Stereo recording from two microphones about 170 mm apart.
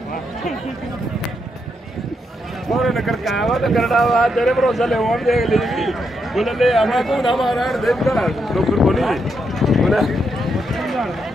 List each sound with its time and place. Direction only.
2.7 s speech: centre (ahead or behind)